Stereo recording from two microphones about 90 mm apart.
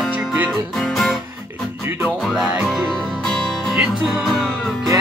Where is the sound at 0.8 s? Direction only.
Centre (ahead or behind).